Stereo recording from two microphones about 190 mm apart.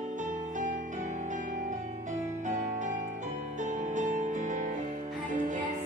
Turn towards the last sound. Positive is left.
turn(degrees=-45)  # may be behind; listen again after turning